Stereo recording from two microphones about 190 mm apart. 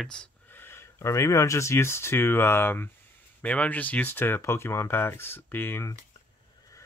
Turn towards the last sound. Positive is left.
turn(degrees=10)  # may be behind; listen again after turning